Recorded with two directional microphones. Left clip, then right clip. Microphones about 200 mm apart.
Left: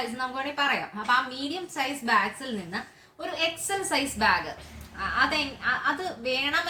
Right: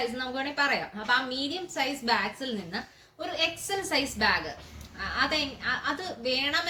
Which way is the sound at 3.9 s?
10° left (ahead or behind).